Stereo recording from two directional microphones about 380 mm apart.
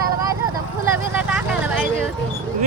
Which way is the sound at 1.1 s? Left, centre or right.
Centre.